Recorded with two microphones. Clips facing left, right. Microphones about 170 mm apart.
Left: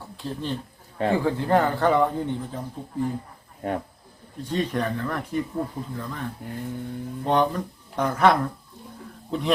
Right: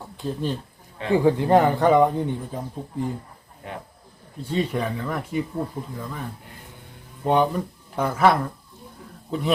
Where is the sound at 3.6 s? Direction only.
45° left (ahead or behind).